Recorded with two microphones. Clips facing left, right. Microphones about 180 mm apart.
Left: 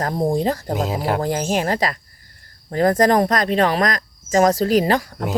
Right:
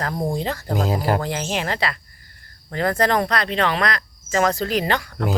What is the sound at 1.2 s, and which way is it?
Speech, 40° left (ahead or behind).